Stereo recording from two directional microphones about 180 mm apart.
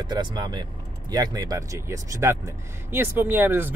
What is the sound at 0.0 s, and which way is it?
Speech, 25° right (ahead or behind).